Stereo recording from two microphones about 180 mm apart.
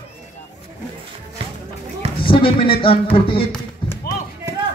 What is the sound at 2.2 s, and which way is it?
Speech, 30° left (ahead or behind).